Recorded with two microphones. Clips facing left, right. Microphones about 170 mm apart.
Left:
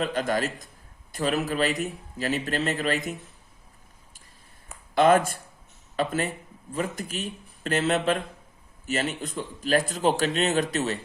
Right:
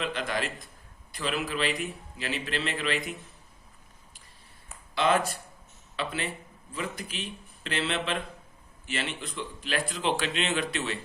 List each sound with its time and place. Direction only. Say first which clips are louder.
0.0 s speech: left 5 dB; 45° left (ahead or behind)
4.9 s speech: left 6 dB; 50° left (ahead or behind)